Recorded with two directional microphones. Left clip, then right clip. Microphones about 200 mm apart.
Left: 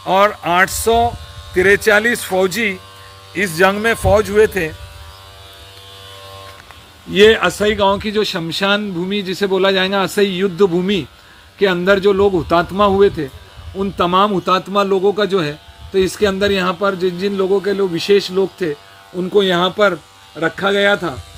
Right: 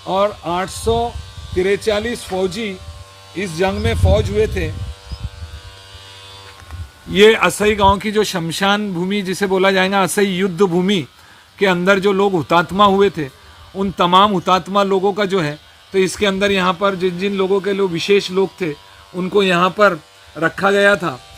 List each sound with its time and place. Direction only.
0.0 s speech: 15° left (ahead or behind)
7.1 s a man's voice: 55° right (ahead or behind)